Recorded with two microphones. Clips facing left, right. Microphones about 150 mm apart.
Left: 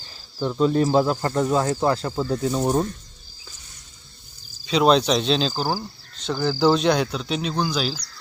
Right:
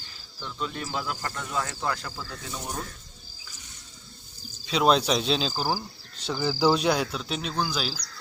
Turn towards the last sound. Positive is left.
turn(degrees=-5)  # may be behind; listen again after turning